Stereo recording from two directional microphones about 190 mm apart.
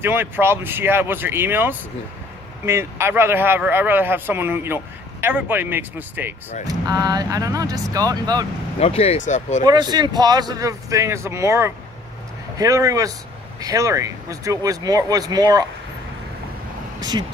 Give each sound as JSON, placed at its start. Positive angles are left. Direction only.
{"t": 0.0, "sound": "speech", "side_deg": -10}
{"t": 6.9, "sound": "speech", "side_deg": -20}
{"t": 8.7, "sound": "speech", "side_deg": 30}
{"t": 9.7, "sound": "speech", "side_deg": -20}